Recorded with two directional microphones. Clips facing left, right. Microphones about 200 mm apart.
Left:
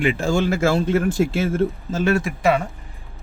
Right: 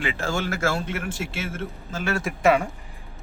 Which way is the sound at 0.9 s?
35° left (ahead or behind).